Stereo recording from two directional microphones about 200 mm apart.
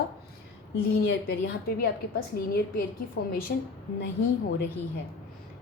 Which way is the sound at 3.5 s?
55° left (ahead or behind).